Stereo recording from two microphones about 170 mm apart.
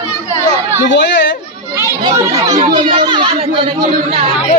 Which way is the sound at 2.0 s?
20° right (ahead or behind).